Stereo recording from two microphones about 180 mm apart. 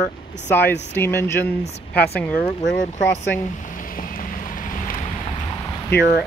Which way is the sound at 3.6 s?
50° left (ahead or behind).